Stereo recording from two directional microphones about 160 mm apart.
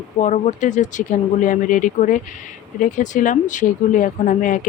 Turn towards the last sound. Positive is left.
turn(degrees=55)  # may be behind; listen again after turning